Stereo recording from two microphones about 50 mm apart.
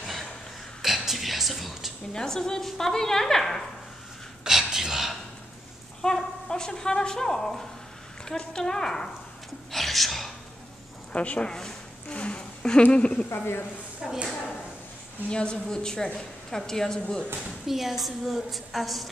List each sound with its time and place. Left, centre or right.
0.0 s a sound: centre
0.8 s speech: centre
2.1 s a woman's voice: centre
4.5 s a sound: centre
6.0 s a woman's voice: centre
9.7 s whispering: centre
11.1 s speech: left
11.5 s a sound: centre
12.2 s a sound: left
12.9 s speech: centre
14.0 s a woman's voice: centre
15.2 s a woman's voice: centre
17.6 s a woman's voice: centre